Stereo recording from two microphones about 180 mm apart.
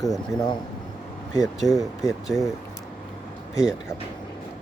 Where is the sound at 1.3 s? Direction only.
20° left (ahead or behind).